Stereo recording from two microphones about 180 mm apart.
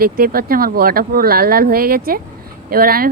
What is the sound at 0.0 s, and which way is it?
Speech, 55° right (ahead or behind).